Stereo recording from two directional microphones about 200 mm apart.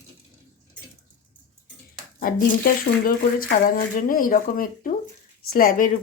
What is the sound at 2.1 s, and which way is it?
Speech, 45° left (ahead or behind).